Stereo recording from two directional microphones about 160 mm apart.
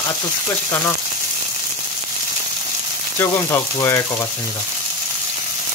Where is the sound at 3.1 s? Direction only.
15° left (ahead or behind).